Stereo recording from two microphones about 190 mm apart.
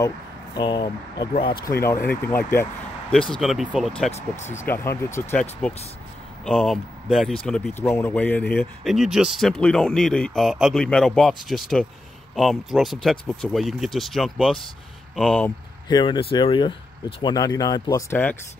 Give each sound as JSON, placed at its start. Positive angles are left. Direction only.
{"t": 0.6, "sound": "speech", "side_deg": 25}
{"t": 1.9, "sound": "speech", "side_deg": 10}
{"t": 4.5, "sound": "speech", "side_deg": 15}
{"t": 15.9, "sound": "speech", "side_deg": 25}